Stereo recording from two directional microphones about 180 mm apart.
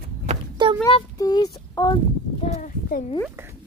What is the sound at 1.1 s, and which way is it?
Child singing, 20° left (ahead or behind).